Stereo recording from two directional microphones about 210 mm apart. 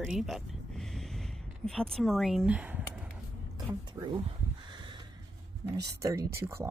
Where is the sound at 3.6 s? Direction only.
20° right (ahead or behind).